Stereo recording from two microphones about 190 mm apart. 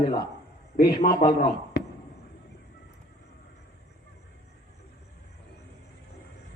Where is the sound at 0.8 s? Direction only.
50° left (ahead or behind).